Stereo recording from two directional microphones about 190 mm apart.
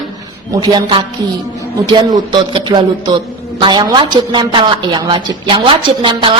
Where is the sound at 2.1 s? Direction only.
25° right (ahead or behind).